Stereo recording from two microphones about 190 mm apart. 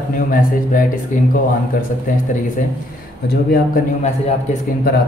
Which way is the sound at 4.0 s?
35° left (ahead or behind).